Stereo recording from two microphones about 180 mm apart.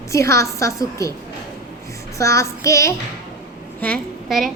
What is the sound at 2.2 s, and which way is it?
Speech, 15° left (ahead or behind).